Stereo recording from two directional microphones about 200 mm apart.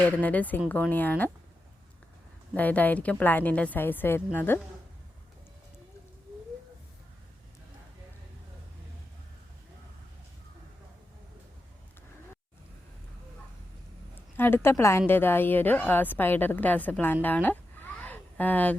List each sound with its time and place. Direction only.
0.0 s a woman's voice: 10° left (ahead or behind)
2.6 s a woman's voice: 10° left (ahead or behind)
14.3 s a woman's voice: 10° left (ahead or behind)
17.2 s a sound: 10° left (ahead or behind)